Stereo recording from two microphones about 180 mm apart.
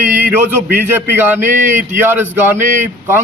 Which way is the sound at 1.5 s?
45° right (ahead or behind).